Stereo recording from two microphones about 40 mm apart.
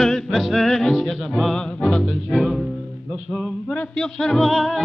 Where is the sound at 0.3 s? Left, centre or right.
Centre.